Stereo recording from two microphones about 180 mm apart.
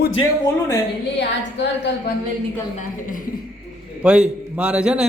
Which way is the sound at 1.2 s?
75° left (ahead or behind).